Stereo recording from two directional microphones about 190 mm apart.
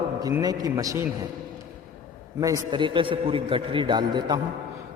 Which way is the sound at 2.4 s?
20° right (ahead or behind).